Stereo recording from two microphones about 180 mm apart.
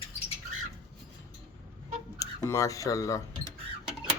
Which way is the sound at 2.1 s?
15° left (ahead or behind).